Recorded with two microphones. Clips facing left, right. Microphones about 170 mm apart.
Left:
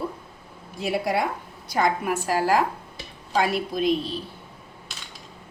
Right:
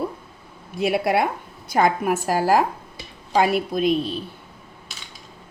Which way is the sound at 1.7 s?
50° right (ahead or behind).